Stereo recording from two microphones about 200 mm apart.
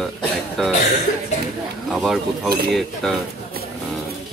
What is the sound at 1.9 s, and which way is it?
Speech, centre (ahead or behind).